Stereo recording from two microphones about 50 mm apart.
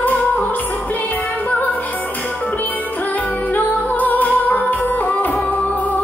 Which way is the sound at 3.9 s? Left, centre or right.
Left.